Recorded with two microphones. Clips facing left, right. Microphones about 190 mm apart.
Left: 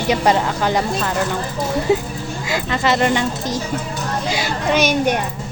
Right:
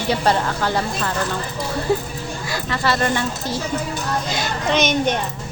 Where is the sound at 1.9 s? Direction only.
20° left (ahead or behind).